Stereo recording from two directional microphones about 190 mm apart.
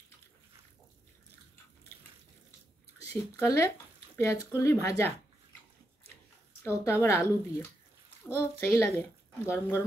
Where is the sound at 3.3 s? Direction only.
15° left (ahead or behind).